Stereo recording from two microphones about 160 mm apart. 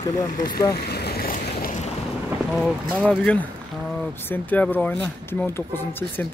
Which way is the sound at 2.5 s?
Centre (ahead or behind).